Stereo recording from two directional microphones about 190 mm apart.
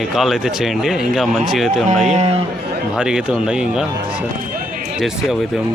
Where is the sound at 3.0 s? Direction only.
5° right (ahead or behind).